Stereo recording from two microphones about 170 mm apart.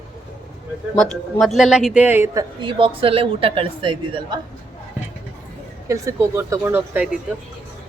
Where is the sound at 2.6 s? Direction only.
30° right (ahead or behind).